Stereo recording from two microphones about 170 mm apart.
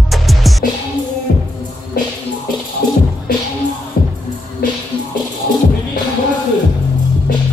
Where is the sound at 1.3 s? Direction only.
60° left (ahead or behind).